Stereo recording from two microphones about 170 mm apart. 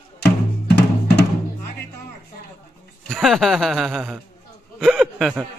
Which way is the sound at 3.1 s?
Centre (ahead or behind).